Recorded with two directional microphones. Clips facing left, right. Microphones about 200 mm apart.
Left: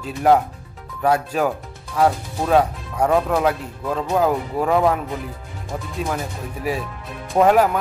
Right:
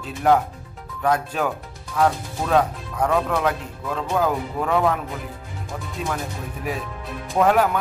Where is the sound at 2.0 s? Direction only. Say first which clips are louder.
Left 3 dB; 25° left (ahead or behind).